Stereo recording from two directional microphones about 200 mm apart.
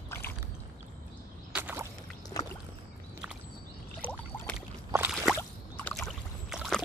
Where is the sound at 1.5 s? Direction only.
10° right (ahead or behind).